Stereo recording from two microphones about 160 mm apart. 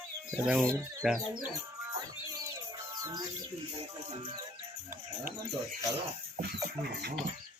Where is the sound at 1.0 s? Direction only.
Centre (ahead or behind).